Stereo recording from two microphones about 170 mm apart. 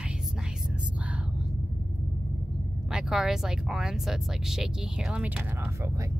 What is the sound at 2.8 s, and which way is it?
Speech, 5° right (ahead or behind).